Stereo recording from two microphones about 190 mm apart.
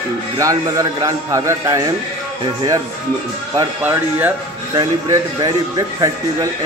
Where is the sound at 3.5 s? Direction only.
15° right (ahead or behind).